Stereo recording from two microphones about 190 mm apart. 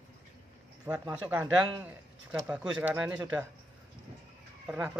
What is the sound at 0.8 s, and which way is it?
Speech, 20° right (ahead or behind).